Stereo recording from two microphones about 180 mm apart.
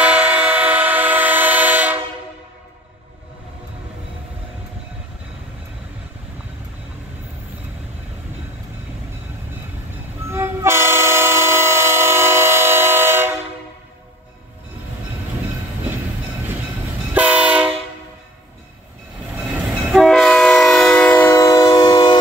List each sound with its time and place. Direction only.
0.0 s train: 10° right (ahead or behind)
10.3 s train: 15° right (ahead or behind)
17.1 s train: 10° right (ahead or behind)
19.3 s train: 10° right (ahead or behind); by 22.2 s 25° left (ahead or behind)